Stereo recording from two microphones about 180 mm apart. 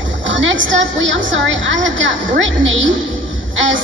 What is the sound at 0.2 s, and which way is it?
A woman's voice, 90° right.